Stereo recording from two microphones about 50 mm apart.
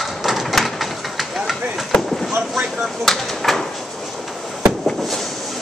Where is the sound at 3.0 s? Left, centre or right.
Centre.